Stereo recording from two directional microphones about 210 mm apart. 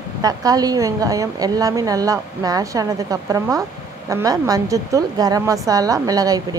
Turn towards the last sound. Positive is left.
turn(degrees=-15)  # may be behind; listen again after turning